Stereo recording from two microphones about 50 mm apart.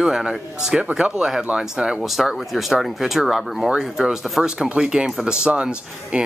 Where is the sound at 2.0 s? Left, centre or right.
Centre.